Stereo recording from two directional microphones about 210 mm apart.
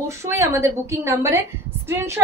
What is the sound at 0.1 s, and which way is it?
A woman's voice, 15° right (ahead or behind).